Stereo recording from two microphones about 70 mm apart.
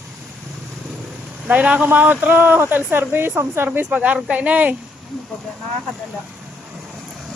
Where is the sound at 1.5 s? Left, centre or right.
Right.